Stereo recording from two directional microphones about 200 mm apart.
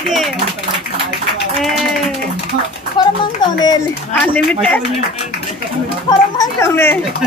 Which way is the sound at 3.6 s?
20° left (ahead or behind).